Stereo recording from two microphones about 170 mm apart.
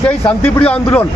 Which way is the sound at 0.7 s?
10° left (ahead or behind).